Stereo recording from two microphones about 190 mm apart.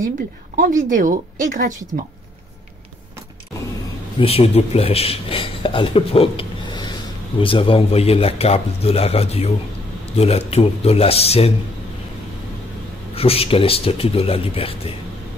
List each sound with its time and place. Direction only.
0.6 s speech: 45° right (ahead or behind)
4.2 s speech: 30° left (ahead or behind)
13.1 s speech: 30° left (ahead or behind)